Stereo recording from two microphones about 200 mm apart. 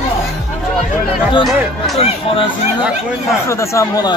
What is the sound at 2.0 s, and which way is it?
Speech, 30° left (ahead or behind).